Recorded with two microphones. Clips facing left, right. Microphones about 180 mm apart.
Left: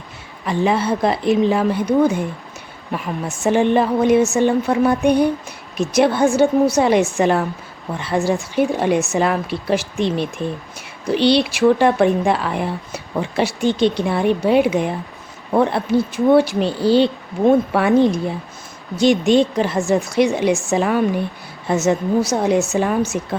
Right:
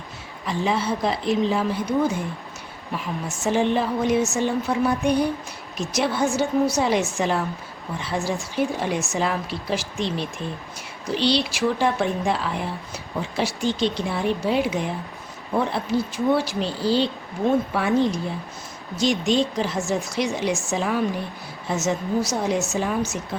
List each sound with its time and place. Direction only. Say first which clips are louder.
0.4 s speech: left 6 dB; 60° left (ahead or behind)
2.9 s speech: left 5 dB; 55° left (ahead or behind)